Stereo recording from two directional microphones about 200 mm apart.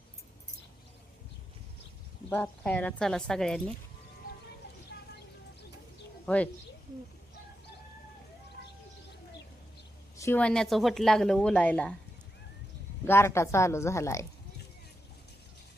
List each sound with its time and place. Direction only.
2.3 s a woman's voice: 5° left (ahead or behind)
4.2 s music: 45° left (ahead or behind)
6.2 s speech: 5° left (ahead or behind)
10.2 s a woman's voice: 10° left (ahead or behind)
13.1 s speech: 10° left (ahead or behind)